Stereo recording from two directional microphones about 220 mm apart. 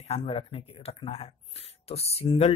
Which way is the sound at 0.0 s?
25° left (ahead or behind).